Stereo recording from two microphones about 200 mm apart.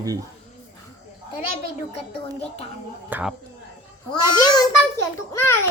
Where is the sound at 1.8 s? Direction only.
30° left (ahead or behind).